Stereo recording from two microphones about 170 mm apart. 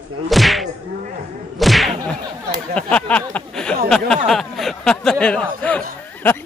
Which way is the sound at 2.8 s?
5° left (ahead or behind).